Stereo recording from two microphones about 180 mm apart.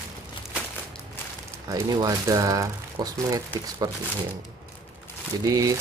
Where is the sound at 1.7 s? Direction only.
20° right (ahead or behind).